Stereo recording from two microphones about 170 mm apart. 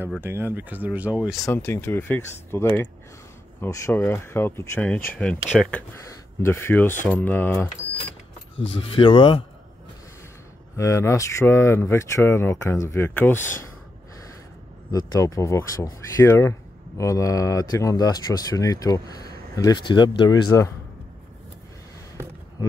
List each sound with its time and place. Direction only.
0.2 s speech: 10° right (ahead or behind)
1.4 s speech: 15° left (ahead or behind)
8.8 s speech: 30° left (ahead or behind)
10.8 s speech: 15° left (ahead or behind)
14.9 s speech: 20° left (ahead or behind)